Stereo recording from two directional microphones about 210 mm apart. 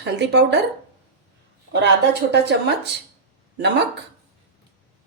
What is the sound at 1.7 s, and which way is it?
A woman's voice, 55° right (ahead or behind).